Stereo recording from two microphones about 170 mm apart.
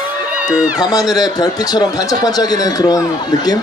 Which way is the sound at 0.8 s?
20° left (ahead or behind).